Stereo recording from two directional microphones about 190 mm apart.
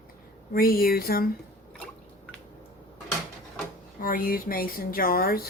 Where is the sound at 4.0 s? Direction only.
50° left (ahead or behind).